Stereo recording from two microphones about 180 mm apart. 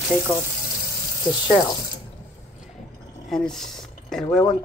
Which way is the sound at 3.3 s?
Centre (ahead or behind).